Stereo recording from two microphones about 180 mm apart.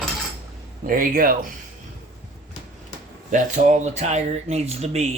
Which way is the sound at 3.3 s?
45° right (ahead or behind).